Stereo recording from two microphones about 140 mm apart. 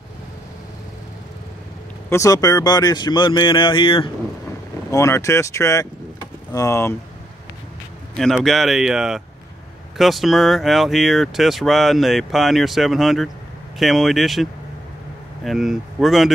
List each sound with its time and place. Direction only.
2.0 s speech: 20° left (ahead or behind); by 4.1 s 35° left (ahead or behind)
4.9 s speech: 20° left (ahead or behind)
8.2 s speech: centre (ahead or behind)